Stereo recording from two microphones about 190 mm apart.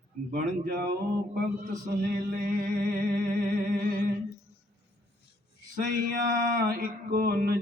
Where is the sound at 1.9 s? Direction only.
50° right (ahead or behind).